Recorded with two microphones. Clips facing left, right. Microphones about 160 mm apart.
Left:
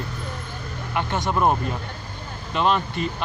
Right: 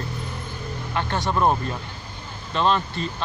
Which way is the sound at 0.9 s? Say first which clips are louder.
Left 1 dB; 15° left (ahead or behind).